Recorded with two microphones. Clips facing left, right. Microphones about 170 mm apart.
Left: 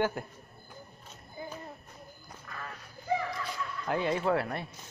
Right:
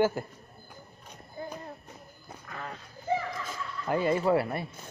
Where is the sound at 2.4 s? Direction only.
20° right (ahead or behind).